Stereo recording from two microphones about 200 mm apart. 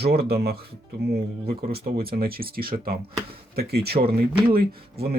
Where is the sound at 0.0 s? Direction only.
50° right (ahead or behind).